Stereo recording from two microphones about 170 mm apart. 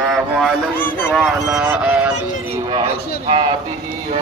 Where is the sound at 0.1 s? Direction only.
Centre (ahead or behind).